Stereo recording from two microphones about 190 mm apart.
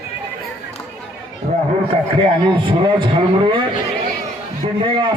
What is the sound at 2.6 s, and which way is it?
Speech, 25° right (ahead or behind).